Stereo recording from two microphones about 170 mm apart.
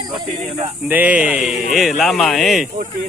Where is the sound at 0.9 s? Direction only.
10° right (ahead or behind).